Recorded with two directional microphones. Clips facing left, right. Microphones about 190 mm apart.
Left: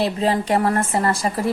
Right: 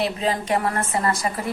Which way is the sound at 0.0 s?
35° left (ahead or behind).